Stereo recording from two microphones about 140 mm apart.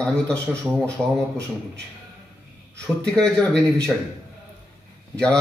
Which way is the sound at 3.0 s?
5° left (ahead or behind).